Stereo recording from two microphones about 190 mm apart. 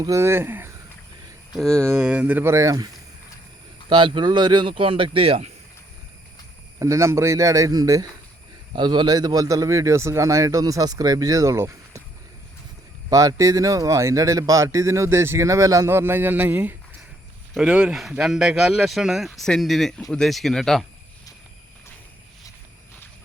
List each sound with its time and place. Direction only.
0.0 s speech: 15° right (ahead or behind)
1.5 s speech: 5° left (ahead or behind); by 5.5 s 30° right (ahead or behind)
6.7 s speech: 15° right (ahead or behind)
13.1 s speech: 20° right (ahead or behind); by 20.8 s centre (ahead or behind)